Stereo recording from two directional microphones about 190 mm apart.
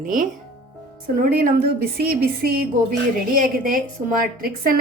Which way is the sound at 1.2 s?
50° right (ahead or behind).